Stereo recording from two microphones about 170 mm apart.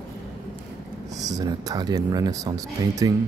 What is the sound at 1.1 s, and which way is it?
Speech, 20° right (ahead or behind).